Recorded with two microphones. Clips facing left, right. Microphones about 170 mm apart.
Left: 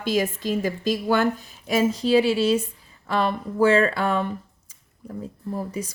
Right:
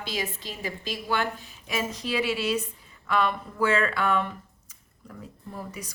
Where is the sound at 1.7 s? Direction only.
35° left (ahead or behind).